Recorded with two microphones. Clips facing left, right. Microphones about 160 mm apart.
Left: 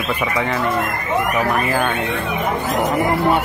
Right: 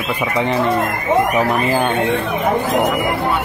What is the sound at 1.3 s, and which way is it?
Speech, 25° right (ahead or behind).